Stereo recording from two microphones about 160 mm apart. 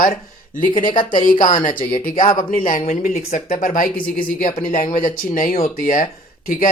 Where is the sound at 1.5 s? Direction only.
55° left (ahead or behind).